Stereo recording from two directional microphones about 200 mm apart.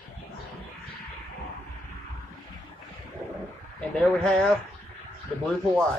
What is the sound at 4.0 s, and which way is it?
Speech, centre (ahead or behind).